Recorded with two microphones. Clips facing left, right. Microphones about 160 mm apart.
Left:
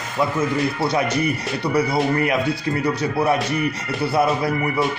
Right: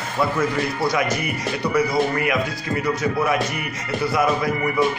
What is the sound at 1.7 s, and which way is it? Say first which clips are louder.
Speech: left 1 dB; 35° left (ahead or behind).